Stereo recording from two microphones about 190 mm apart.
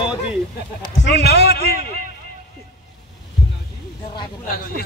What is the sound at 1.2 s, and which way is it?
Speech, 60° left (ahead or behind).